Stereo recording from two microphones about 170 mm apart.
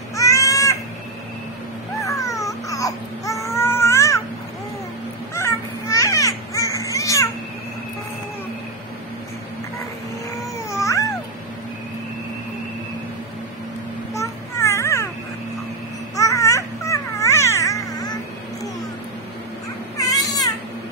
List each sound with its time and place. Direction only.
0.1 s baby cry: 20° left (ahead or behind)
2.0 s baby cry: 20° left (ahead or behind)
5.3 s music: 15° left (ahead or behind)
10.7 s cat: 20° left (ahead or behind)
14.1 s a sound: 15° left (ahead or behind)
16.2 s babbling: 20° left (ahead or behind)
20.0 s baby cry: 20° left (ahead or behind)